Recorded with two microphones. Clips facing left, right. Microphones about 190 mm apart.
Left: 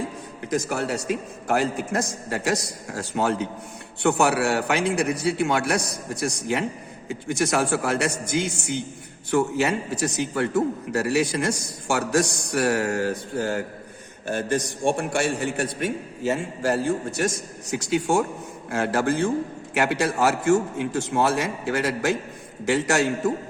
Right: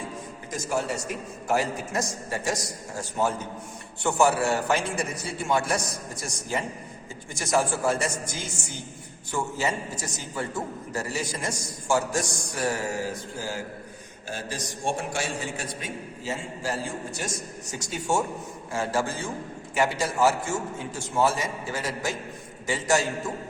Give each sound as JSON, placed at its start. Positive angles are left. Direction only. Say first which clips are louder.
{"t": 0.5, "sound": "a man's voice", "louder": "left 4 dB", "side_deg": 65}